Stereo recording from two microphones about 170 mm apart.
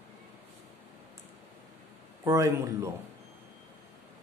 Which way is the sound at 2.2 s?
15° right (ahead or behind).